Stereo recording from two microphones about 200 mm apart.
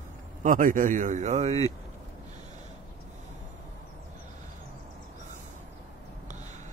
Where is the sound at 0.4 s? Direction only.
40° right (ahead or behind).